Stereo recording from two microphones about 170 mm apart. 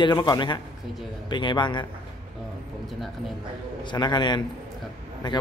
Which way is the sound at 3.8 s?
25° left (ahead or behind).